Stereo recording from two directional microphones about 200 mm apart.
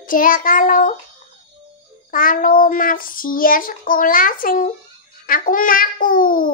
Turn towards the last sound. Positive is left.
turn(degrees=45)  # may be behind; listen again after turning